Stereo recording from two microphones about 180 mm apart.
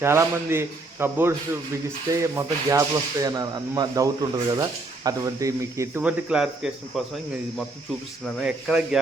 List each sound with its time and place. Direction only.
0.0 s speech: 15° right (ahead or behind)
8.2 s speech: 5° right (ahead or behind)